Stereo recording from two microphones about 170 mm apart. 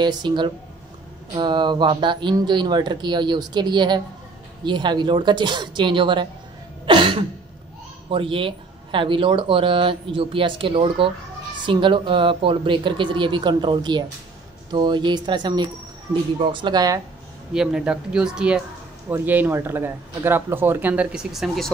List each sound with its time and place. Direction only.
0.0 s speech: 25° right (ahead or behind)
6.9 s cough: 30° right (ahead or behind)
8.1 s speech: 30° right (ahead or behind)
17.5 s speech: 5° right (ahead or behind)